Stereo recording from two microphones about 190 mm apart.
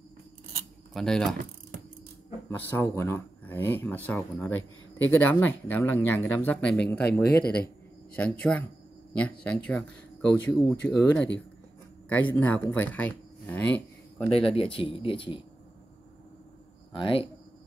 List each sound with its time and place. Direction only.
0.9 s speech: centre (ahead or behind)
2.7 s speech: 10° left (ahead or behind)
7.2 s speech: 55° left (ahead or behind)
8.2 s speech: 5° left (ahead or behind)
12.1 s speech: 10° left (ahead or behind)
14.3 s speech: 30° left (ahead or behind)
16.9 s speech: 25° left (ahead or behind)